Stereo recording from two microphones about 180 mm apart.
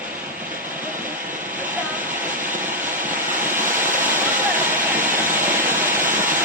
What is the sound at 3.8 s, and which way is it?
Vehicle, 45° right (ahead or behind).